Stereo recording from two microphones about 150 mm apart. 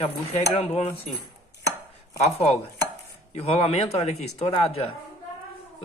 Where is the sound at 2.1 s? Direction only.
45° left (ahead or behind).